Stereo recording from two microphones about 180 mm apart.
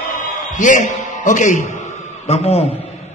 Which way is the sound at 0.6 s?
45° left (ahead or behind).